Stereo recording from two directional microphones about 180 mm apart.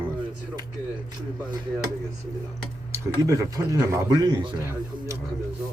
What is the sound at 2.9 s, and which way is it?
Speech, 15° right (ahead or behind).